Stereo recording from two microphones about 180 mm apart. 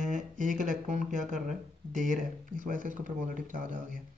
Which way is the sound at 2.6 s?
45° right (ahead or behind).